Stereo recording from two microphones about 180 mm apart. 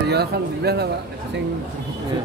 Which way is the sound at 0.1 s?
65° right (ahead or behind).